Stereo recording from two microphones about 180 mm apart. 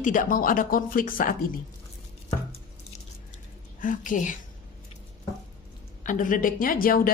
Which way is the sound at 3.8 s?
45° left (ahead or behind).